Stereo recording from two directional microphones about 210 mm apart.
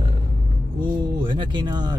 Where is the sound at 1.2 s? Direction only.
25° right (ahead or behind).